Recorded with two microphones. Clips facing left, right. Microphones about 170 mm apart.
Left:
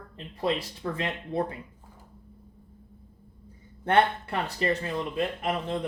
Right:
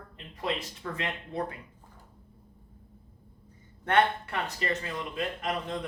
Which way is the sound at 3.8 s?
30° left (ahead or behind).